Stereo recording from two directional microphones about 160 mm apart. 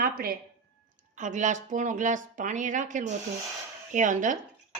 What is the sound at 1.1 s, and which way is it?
A woman's voice, 50° right (ahead or behind).